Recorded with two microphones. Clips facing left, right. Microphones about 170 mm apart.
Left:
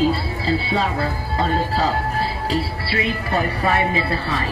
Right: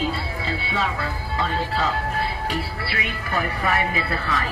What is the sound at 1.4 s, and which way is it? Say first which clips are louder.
Speech: left 4 dB; 35° left (ahead or behind).